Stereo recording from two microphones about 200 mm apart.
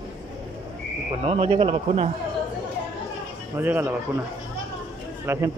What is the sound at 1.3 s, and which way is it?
Speech, 30° right (ahead or behind).